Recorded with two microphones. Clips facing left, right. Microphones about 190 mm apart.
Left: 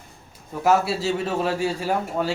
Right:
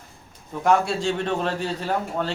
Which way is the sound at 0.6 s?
5° left (ahead or behind).